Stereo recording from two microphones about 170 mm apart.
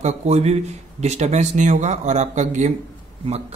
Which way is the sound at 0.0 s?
40° right (ahead or behind).